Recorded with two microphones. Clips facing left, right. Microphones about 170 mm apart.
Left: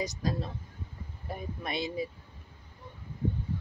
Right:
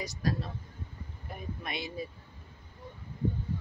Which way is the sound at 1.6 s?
35° left (ahead or behind).